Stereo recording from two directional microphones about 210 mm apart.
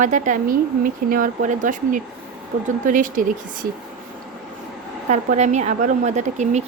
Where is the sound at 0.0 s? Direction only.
35° right (ahead or behind).